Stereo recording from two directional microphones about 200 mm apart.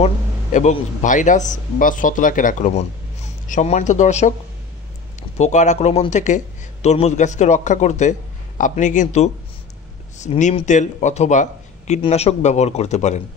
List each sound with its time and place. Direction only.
0.0 s speech: 35° left (ahead or behind)
5.4 s speech: 35° left (ahead or behind)